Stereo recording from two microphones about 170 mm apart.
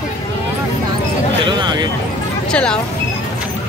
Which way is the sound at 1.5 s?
25° right (ahead or behind).